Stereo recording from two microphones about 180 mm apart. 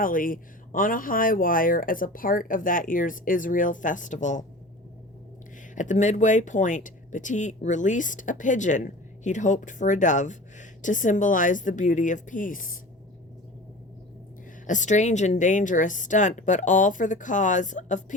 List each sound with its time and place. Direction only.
0.0 s speech: 50° left (ahead or behind)
5.7 s speech: 45° left (ahead or behind)
14.7 s speech: 40° left (ahead or behind)